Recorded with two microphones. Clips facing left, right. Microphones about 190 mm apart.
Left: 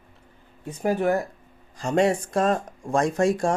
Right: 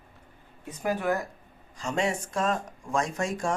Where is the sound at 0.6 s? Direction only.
30° left (ahead or behind).